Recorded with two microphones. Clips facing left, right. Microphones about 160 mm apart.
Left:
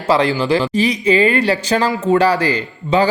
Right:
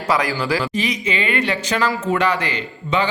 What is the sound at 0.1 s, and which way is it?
A man's voice, 25° left (ahead or behind).